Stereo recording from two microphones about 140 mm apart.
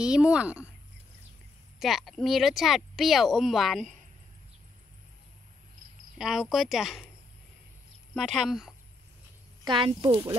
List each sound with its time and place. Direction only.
0.0 s speech: 5° right (ahead or behind)
1.8 s speech: centre (ahead or behind)
6.1 s speech: centre (ahead or behind)
8.1 s speech: centre (ahead or behind)
9.7 s speech: 35° right (ahead or behind)